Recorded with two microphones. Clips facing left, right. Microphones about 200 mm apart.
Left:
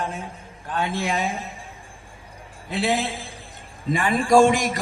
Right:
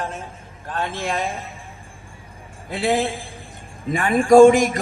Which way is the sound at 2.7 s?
50° right (ahead or behind).